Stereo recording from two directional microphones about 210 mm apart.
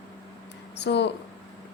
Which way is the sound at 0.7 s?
55° left (ahead or behind).